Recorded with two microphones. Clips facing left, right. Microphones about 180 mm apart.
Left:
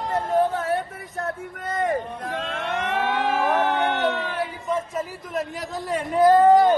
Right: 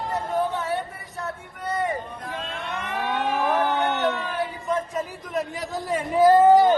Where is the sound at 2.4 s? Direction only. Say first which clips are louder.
Left 4 dB; 90° left.